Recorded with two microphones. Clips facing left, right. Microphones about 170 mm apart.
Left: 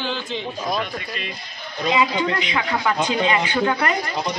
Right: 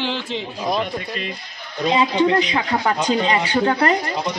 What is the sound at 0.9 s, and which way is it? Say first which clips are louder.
Speech: right 3 dB; 40° right (ahead or behind).